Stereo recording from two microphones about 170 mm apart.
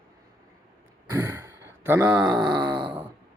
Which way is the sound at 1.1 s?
20° right (ahead or behind).